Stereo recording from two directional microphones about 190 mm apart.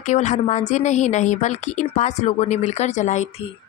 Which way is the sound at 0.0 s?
40° left (ahead or behind).